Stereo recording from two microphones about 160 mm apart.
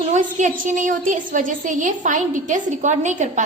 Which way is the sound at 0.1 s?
50° right (ahead or behind).